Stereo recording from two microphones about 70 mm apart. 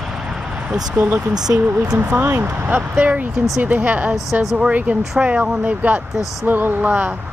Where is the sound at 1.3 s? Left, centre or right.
Right.